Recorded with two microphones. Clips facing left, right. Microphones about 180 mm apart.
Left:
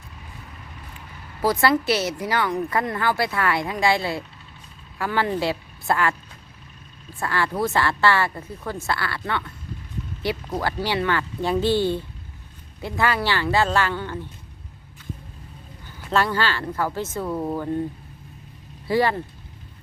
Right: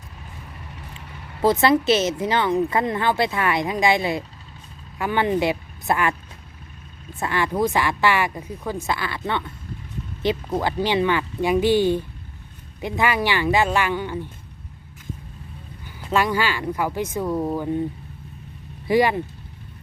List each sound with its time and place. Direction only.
1.4 s a woman's voice: 25° right (ahead or behind)
7.2 s speech: 20° right (ahead or behind)
16.1 s speech: 15° right (ahead or behind)
18.9 s speech: 15° right (ahead or behind)